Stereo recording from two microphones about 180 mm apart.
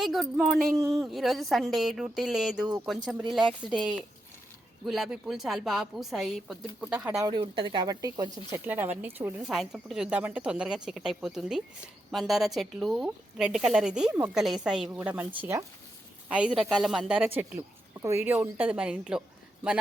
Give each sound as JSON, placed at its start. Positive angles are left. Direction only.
{"t": 0.0, "sound": "a woman's voice", "side_deg": 0}
{"t": 3.7, "sound": "a woman's voice", "side_deg": -5}
{"t": 6.9, "sound": "speech", "side_deg": -15}
{"t": 8.5, "sound": "a woman's voice", "side_deg": -10}